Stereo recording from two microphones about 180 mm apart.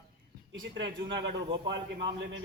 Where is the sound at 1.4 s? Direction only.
25° right (ahead or behind).